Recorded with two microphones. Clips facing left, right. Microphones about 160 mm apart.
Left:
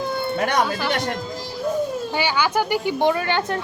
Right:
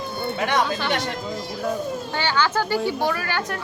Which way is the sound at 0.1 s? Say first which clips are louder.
Even; 45° left (ahead or behind).